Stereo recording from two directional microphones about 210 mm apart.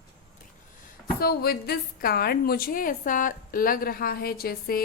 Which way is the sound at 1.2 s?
50° left (ahead or behind).